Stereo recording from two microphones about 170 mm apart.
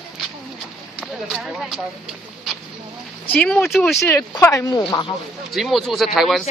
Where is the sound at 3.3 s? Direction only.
5° left (ahead or behind).